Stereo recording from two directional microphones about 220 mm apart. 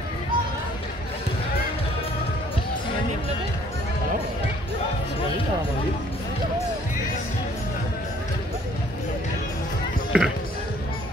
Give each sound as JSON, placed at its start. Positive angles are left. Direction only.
{"t": 10.1, "sound": "basketball bounce", "side_deg": -5}